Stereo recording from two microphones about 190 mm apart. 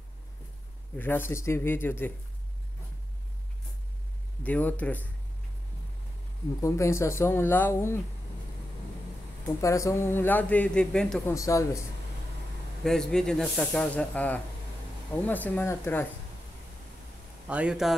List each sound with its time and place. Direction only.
0.9 s a man's voice: 10° left (ahead or behind)
4.4 s a man's voice: 10° left (ahead or behind)
6.6 s a man's voice: 15° left (ahead or behind)
9.6 s a man's voice: 15° left (ahead or behind)
11.3 s a man's voice: 15° left (ahead or behind)
12.8 s a man's voice: 5° left (ahead or behind)
17.5 s speech: 5° right (ahead or behind)